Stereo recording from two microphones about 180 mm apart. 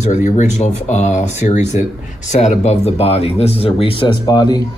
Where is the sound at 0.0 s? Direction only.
40° left (ahead or behind).